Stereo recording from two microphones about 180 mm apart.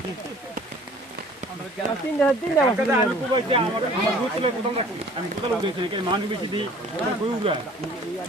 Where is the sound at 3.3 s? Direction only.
30° right (ahead or behind).